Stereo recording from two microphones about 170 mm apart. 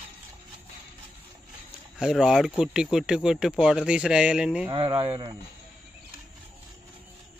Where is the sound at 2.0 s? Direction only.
Centre (ahead or behind).